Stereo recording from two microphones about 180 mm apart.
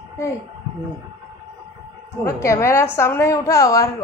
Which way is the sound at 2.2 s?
15° left (ahead or behind).